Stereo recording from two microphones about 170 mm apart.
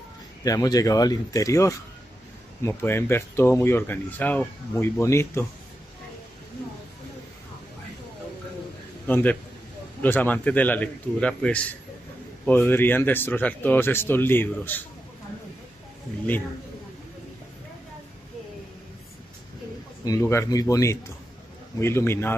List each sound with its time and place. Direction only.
0.4 s speech: 20° left (ahead or behind)
9.0 s a man's voice: 10° left (ahead or behind)
20.1 s speech: 15° left (ahead or behind)